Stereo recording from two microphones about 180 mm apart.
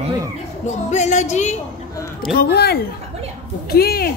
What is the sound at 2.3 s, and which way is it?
Speech, 65° left (ahead or behind).